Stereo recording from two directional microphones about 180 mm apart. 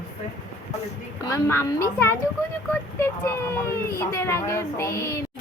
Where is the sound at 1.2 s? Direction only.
15° left (ahead or behind).